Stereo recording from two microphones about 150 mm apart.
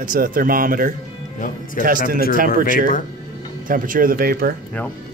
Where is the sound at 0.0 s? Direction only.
65° right (ahead or behind).